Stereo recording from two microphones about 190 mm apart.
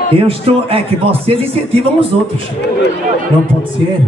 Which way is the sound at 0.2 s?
30° right (ahead or behind).